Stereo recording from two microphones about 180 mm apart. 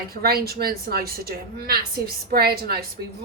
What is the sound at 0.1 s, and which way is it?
A woman's voice, 60° right (ahead or behind).